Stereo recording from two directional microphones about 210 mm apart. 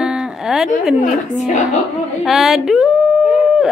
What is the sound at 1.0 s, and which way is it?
Speech, 35° left (ahead or behind).